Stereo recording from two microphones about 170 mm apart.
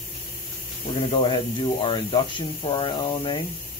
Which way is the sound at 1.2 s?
30° left (ahead or behind).